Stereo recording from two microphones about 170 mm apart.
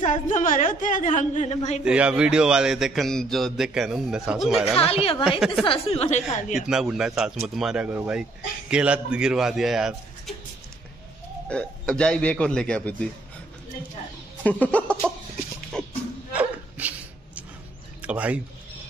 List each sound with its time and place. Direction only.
0.0 s a woman's voice: 45° left (ahead or behind)
1.9 s speech: 5° right (ahead or behind)
4.7 s a woman's voice: 35° left (ahead or behind)
6.7 s speech: 5° right (ahead or behind)
11.4 s a man's voice: 5° left (ahead or behind)
14.4 s a man's voice: 10° left (ahead or behind)
15.7 s a sound: 5° left (ahead or behind)
16.3 s a sound: 10° right (ahead or behind)
18.0 s speech: 10° right (ahead or behind)